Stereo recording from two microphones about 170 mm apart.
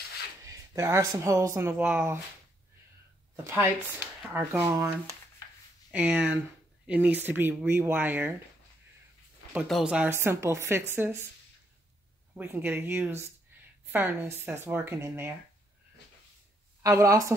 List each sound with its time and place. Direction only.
0.5 s speech: 15° right (ahead or behind)
4.3 s speech: 10° right (ahead or behind)
9.5 s speech: 5° right (ahead or behind)
12.4 s speech: 10° right (ahead or behind)
16.8 s a woman's voice: 20° right (ahead or behind)